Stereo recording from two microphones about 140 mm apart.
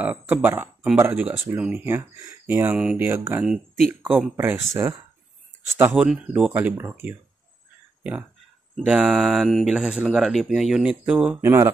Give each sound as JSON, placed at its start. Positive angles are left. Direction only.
{"t": 0.0, "sound": "speech", "side_deg": -10}
{"t": 5.9, "sound": "speech", "side_deg": -10}
{"t": 11.4, "sound": "speech", "side_deg": -20}